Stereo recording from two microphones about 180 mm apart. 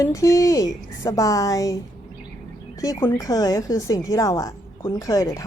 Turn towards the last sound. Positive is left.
turn(degrees=20)  # may be behind; listen again after turning